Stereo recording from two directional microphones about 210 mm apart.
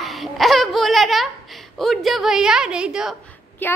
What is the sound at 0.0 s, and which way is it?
Speech, centre (ahead or behind).